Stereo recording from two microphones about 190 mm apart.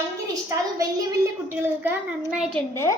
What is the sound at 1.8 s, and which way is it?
Speech, 10° right (ahead or behind).